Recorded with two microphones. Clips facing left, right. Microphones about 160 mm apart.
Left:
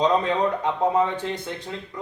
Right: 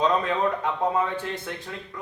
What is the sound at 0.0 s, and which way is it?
Speech, 20° left (ahead or behind).